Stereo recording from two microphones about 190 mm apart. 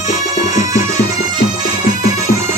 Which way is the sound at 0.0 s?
40° left (ahead or behind).